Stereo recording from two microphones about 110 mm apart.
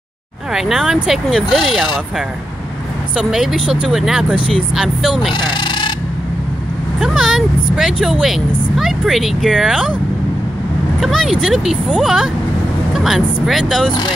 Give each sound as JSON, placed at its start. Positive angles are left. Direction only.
{"t": 0.5, "sound": "speech", "side_deg": -5}
{"t": 3.2, "sound": "speech", "side_deg": -5}
{"t": 5.3, "sound": "a sound", "side_deg": 50}
{"t": 7.0, "sound": "speech", "side_deg": -5}
{"t": 11.0, "sound": "speech", "side_deg": 0}